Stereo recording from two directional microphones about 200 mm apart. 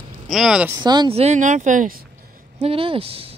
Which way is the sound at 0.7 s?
20° right (ahead or behind).